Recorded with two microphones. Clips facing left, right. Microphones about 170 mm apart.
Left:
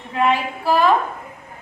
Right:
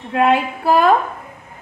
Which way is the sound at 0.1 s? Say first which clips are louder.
Right 4 dB; 55° right (ahead or behind).